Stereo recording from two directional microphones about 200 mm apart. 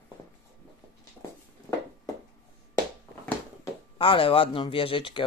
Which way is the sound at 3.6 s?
25° left (ahead or behind).